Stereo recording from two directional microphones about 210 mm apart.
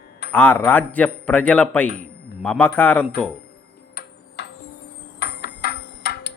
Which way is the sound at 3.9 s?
50° left (ahead or behind).